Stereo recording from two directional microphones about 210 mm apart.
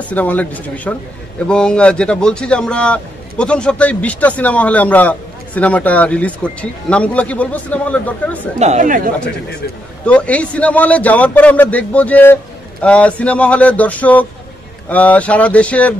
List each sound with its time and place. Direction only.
0.1 s a man's voice: 5° left (ahead or behind)
8.5 s speech: 35° right (ahead or behind)
10.0 s a man's voice: 5° left (ahead or behind)